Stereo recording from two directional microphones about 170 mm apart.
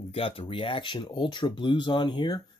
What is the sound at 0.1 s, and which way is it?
Speech, 35° left (ahead or behind).